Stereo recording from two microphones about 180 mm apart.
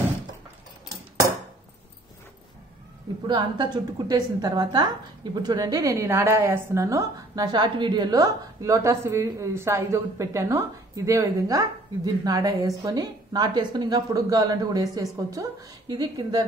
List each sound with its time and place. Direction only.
3.3 s a woman's voice: 25° right (ahead or behind)